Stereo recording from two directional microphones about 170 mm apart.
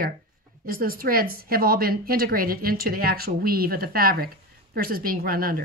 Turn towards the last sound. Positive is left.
turn(degrees=-60)  # may be behind; listen again after turning